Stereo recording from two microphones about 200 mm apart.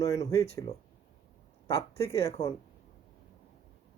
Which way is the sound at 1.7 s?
30° left (ahead or behind).